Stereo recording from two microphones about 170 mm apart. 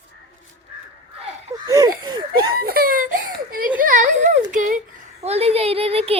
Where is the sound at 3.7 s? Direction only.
50° right (ahead or behind).